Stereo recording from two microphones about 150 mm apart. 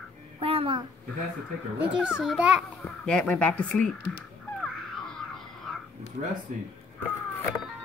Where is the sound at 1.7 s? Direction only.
10° right (ahead or behind).